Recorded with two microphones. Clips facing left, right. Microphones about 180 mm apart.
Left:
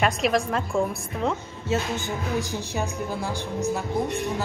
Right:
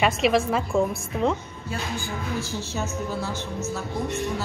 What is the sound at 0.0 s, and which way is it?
A woman's voice, centre (ahead or behind).